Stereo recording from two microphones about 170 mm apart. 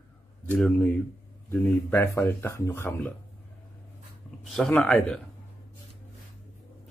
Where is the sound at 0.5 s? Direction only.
5° left (ahead or behind).